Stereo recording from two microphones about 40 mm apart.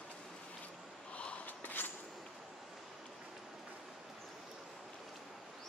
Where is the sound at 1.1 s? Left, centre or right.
Left.